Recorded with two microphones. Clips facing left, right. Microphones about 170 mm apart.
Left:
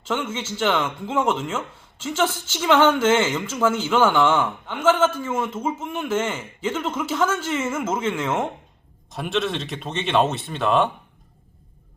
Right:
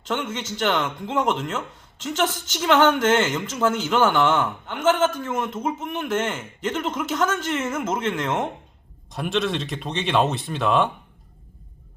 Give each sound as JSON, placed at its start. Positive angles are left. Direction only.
{"t": 0.1, "sound": "speech", "side_deg": 5}